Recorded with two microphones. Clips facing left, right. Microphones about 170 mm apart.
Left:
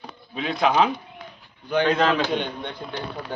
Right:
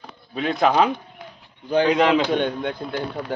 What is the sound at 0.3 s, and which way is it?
Speech, 45° right (ahead or behind).